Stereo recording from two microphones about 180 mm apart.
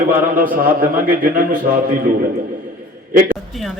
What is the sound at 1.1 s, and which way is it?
Speech, 50° right (ahead or behind).